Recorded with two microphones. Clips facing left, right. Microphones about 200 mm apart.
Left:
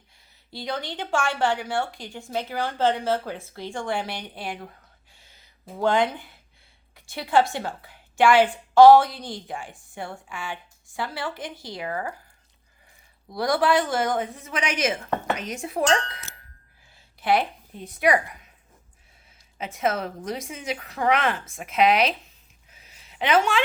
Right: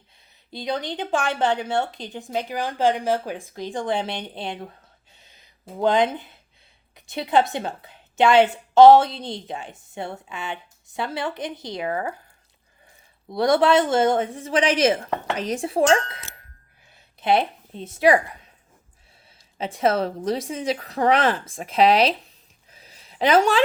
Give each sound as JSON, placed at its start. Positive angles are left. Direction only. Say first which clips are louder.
{"t": 0.5, "sound": "a woman's voice", "louder": "right 4 dB", "side_deg": -20}
{"t": 5.1, "sound": "a sound", "louder": "right 2 dB", "side_deg": -20}
{"t": 6.9, "sound": "a woman's voice", "louder": "right 1 dB", "side_deg": -20}
{"t": 13.3, "sound": "a woman's voice", "louder": "right 4 dB", "side_deg": -25}
{"t": 19.5, "sound": "speech", "louder": "right 5 dB", "side_deg": -30}
{"t": 22.7, "sound": "a sound", "louder": "right 4 dB", "side_deg": -35}